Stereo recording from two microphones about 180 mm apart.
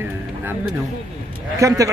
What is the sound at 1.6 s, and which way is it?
Speech, 20° right (ahead or behind).